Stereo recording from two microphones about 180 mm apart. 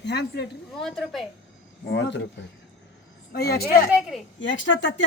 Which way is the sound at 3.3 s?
60° left (ahead or behind).